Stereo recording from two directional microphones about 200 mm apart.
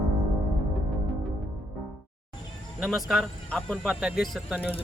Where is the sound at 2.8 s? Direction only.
Centre (ahead or behind).